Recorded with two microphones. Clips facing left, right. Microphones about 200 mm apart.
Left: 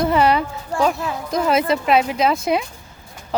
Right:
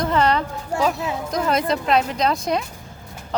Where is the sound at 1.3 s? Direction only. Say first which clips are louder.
Left 3 dB; 5° left (ahead or behind).